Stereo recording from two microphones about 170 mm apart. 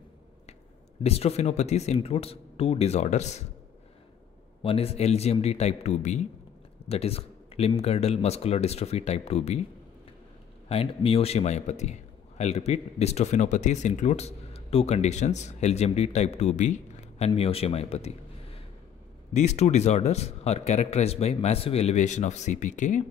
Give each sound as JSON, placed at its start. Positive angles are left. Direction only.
{"t": 1.0, "sound": "speech", "side_deg": 35}
{"t": 4.6, "sound": "speech", "side_deg": 35}
{"t": 10.7, "sound": "a man's voice", "side_deg": 35}